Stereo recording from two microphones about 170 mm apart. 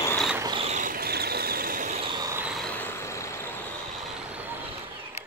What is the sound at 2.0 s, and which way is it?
Vehicle, 30° right (ahead or behind).